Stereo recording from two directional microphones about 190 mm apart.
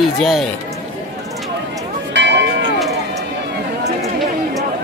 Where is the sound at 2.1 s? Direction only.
70° right (ahead or behind).